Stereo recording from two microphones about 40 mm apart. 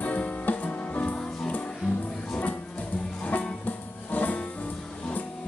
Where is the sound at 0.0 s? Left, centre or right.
Left.